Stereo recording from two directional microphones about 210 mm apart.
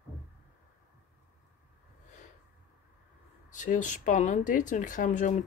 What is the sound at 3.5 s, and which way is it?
Speech, 35° left (ahead or behind).